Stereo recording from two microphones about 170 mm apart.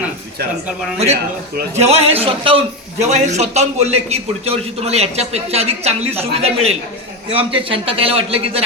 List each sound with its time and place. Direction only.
1.7 s a man's voice: 40° right (ahead or behind)